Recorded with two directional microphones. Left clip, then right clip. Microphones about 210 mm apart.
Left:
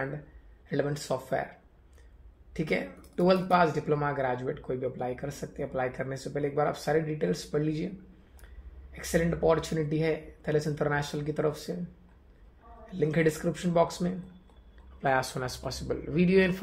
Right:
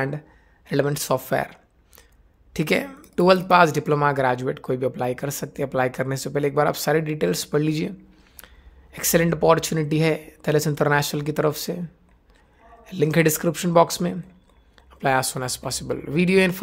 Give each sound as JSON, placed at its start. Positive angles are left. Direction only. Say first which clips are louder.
{"t": 0.7, "sound": "speech", "louder": "right 8 dB", "side_deg": -40}
{"t": 8.9, "sound": "speech", "louder": "right 8 dB", "side_deg": -40}
{"t": 12.8, "sound": "speech", "louder": "right 7 dB", "side_deg": -40}
{"t": 15.0, "sound": "speech", "louder": "right 6 dB", "side_deg": -25}